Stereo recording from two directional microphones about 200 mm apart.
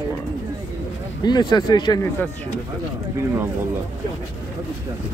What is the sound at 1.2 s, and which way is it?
Speech, 20° left (ahead or behind).